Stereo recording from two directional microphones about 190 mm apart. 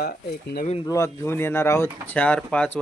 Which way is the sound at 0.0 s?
55° left (ahead or behind).